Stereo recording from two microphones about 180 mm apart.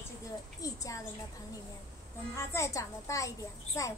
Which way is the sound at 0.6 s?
20° left (ahead or behind).